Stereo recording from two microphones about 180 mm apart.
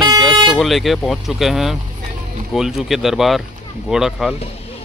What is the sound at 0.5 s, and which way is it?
Speech, centre (ahead or behind).